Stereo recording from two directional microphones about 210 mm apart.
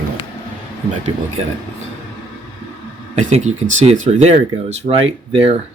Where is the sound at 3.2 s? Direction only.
35° right (ahead or behind).